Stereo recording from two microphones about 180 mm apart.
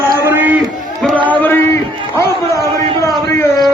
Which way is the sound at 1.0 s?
5° left (ahead or behind).